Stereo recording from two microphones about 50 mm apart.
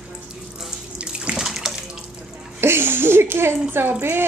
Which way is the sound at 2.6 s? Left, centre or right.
Right.